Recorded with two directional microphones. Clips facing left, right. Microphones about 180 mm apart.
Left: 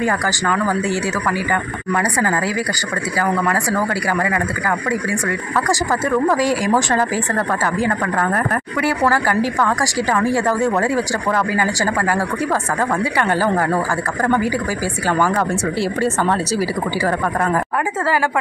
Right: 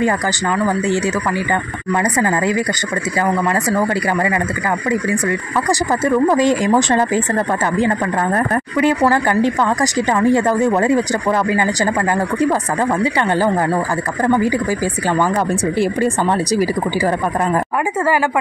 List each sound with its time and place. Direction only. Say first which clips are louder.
0.5 s speech: right 2 dB; 20° right (ahead or behind)
5.7 s speech: right 3 dB; 20° right (ahead or behind)
8.8 s speech: right 3 dB; 20° right (ahead or behind)
15.0 s speech: right 1 dB; 20° right (ahead or behind)